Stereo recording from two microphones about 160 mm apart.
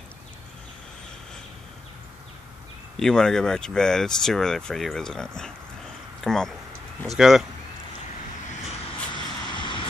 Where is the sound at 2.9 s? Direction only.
5° left (ahead or behind).